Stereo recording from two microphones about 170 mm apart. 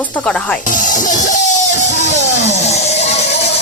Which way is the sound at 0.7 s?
50° left (ahead or behind).